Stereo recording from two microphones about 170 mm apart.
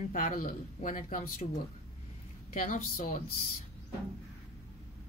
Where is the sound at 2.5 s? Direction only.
45° left (ahead or behind).